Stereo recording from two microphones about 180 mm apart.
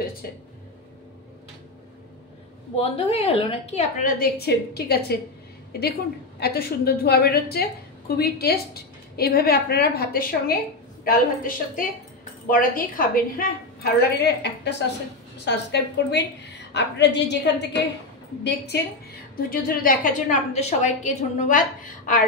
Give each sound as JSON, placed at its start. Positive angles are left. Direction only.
{"t": 0.2, "sound": "a woman's voice", "side_deg": 60}
{"t": 2.8, "sound": "a woman's voice", "side_deg": 35}
{"t": 19.3, "sound": "a woman's voice", "side_deg": 55}